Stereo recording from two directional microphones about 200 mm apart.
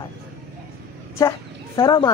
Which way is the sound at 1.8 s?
20° left (ahead or behind).